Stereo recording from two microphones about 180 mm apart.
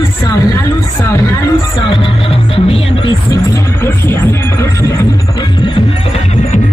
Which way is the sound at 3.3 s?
15° left (ahead or behind).